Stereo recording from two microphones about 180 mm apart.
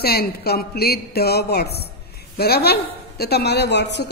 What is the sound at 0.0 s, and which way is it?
A woman's voice, 60° left (ahead or behind).